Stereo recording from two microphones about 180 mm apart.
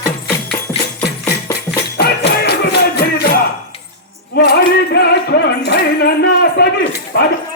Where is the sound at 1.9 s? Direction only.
65° left (ahead or behind).